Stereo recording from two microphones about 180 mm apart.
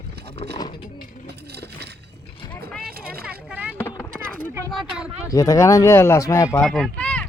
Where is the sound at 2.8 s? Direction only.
60° right (ahead or behind).